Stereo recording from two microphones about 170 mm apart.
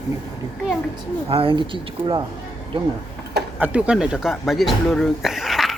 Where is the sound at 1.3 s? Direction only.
30° right (ahead or behind).